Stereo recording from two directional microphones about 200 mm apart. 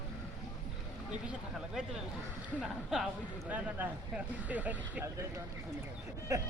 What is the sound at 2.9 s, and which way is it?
Speech, 5° right (ahead or behind).